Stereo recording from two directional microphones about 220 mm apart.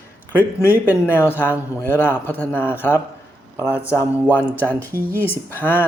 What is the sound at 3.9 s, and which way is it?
Speech, 10° left (ahead or behind).